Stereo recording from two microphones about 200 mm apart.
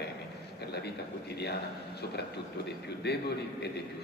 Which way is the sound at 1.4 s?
55° left (ahead or behind).